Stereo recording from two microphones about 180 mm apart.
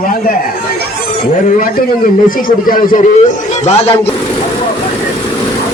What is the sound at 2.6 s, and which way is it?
A man's voice, 50° left (ahead or behind).